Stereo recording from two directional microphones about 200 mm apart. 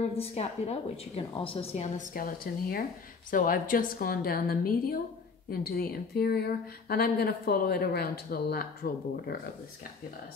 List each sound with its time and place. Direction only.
0.2 s a woman's voice: 30° left (ahead or behind); by 9.4 s 50° left (ahead or behind)